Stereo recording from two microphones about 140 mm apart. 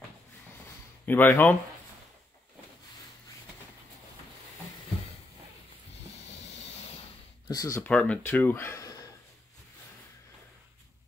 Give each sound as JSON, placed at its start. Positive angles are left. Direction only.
{"t": 1.0, "sound": "speech", "side_deg": 15}
{"t": 6.1, "sound": "music", "side_deg": 50}
{"t": 7.4, "sound": "speech", "side_deg": 25}
{"t": 7.9, "sound": "speech", "side_deg": 10}